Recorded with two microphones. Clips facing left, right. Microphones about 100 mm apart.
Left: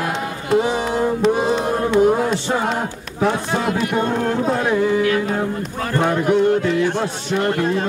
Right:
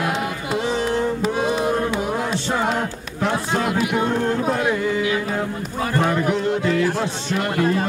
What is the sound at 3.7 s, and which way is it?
Speech, 5° right (ahead or behind).